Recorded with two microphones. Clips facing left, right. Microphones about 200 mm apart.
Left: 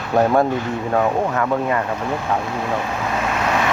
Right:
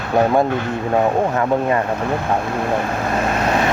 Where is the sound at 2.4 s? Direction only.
55° right (ahead or behind); by 3.6 s 35° right (ahead or behind).